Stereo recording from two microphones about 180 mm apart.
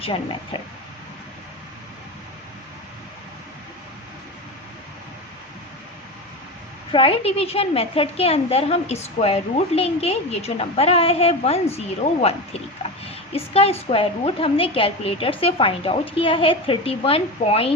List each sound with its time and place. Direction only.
0.0 s speech: 30° left (ahead or behind)
6.9 s a woman's voice: 30° left (ahead or behind)
13.3 s a woman's voice: 35° left (ahead or behind)